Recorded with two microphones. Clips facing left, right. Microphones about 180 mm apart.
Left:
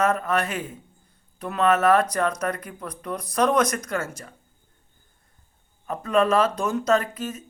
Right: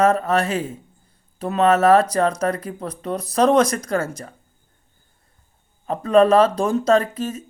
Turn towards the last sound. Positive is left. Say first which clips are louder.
# right 5 dB
turn(degrees=-30)  # may be behind; listen again after turning